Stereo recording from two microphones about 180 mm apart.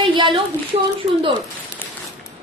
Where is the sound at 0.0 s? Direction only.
30° right (ahead or behind).